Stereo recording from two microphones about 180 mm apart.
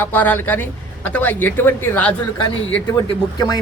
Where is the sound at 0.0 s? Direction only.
10° left (ahead or behind).